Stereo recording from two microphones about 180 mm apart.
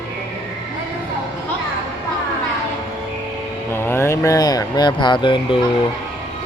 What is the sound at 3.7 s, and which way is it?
Mantra, 15° left (ahead or behind).